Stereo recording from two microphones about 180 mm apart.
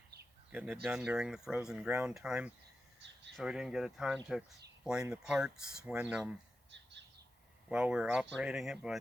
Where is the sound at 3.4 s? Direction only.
5° right (ahead or behind).